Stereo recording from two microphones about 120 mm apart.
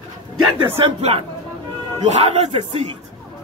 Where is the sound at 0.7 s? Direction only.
55° right (ahead or behind).